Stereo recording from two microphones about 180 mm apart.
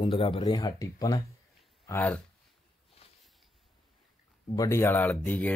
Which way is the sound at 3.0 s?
35° left (ahead or behind).